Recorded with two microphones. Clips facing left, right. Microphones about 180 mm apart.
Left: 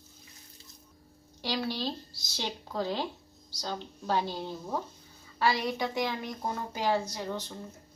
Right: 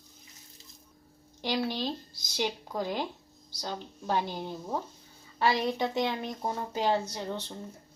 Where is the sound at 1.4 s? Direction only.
20° right (ahead or behind).